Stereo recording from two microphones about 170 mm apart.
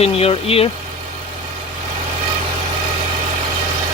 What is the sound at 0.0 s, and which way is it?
Speech, 35° left (ahead or behind).